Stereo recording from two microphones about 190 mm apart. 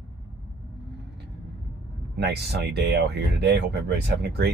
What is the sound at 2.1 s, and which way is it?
Speech, 60° right (ahead or behind).